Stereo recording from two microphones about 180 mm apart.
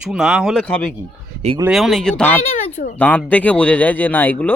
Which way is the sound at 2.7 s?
50° left (ahead or behind).